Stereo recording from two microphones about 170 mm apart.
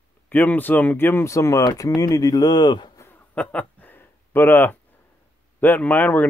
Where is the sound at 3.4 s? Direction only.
5° left (ahead or behind).